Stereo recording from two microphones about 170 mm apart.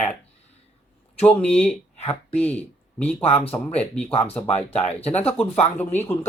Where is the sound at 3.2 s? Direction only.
35° left (ahead or behind).